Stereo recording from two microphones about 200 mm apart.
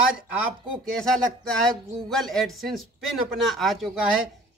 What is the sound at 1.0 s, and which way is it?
A man's voice, 5° left (ahead or behind).